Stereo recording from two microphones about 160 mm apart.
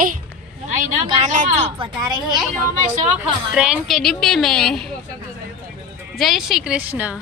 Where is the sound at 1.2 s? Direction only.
50° right (ahead or behind).